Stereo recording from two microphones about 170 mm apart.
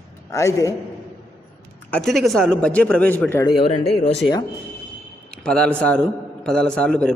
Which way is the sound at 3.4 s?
30° left (ahead or behind).